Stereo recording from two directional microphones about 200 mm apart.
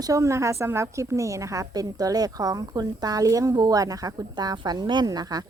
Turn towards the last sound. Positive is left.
turn(degrees=-20)  # may be behind; listen again after turning